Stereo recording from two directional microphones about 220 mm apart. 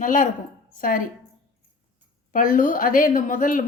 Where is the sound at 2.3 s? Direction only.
40° left (ahead or behind).